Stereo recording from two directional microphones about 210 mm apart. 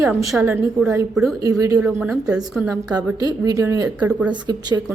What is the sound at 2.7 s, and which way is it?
A woman's voice, 15° right (ahead or behind).